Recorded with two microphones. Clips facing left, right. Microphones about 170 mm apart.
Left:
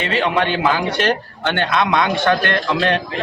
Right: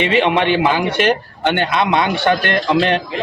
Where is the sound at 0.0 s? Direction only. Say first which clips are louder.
Right 4 dB; 20° right (ahead or behind).